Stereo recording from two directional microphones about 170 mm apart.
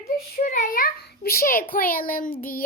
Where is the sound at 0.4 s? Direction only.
50° left (ahead or behind).